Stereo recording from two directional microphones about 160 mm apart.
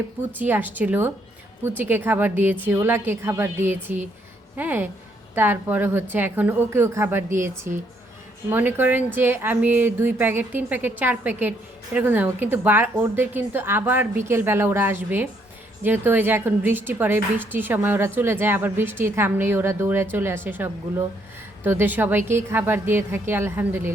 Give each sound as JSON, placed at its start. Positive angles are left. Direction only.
{"t": 0.3, "sound": "a woman's voice", "side_deg": -10}
{"t": 4.5, "sound": "a woman's voice", "side_deg": -10}